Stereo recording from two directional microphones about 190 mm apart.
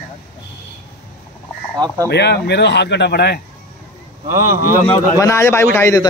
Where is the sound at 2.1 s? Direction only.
60° left (ahead or behind).